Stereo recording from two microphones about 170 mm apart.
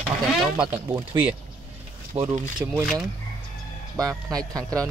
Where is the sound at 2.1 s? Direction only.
30° right (ahead or behind).